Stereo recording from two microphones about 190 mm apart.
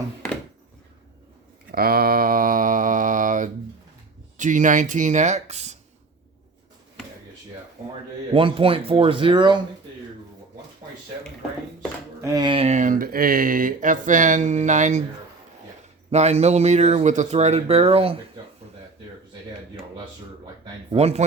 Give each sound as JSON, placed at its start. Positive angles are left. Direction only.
{"t": 1.7, "sound": "mantra", "side_deg": -55}
{"t": 4.4, "sound": "speech", "side_deg": -40}
{"t": 8.3, "sound": "speech", "side_deg": -30}
{"t": 12.2, "sound": "speech", "side_deg": -20}
{"t": 16.1, "sound": "speech", "side_deg": -35}
{"t": 20.9, "sound": "speech", "side_deg": -35}